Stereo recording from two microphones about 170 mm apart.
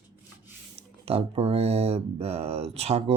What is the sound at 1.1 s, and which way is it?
Speech, 35° right (ahead or behind).